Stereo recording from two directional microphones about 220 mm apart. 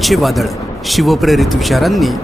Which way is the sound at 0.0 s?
Centre (ahead or behind).